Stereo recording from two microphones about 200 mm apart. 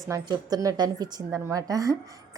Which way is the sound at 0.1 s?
15° right (ahead or behind).